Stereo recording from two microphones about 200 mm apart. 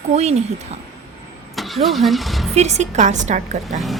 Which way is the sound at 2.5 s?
35° right (ahead or behind).